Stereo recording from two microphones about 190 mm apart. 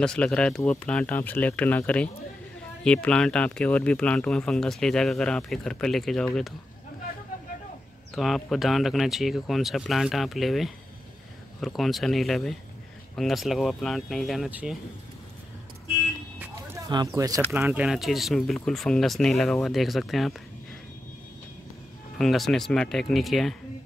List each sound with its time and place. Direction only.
0.0 s speech: 5° left (ahead or behind)
8.1 s speech: centre (ahead or behind)
16.9 s speech: 20° right (ahead or behind); by 20.3 s centre (ahead or behind)
22.2 s speech: centre (ahead or behind)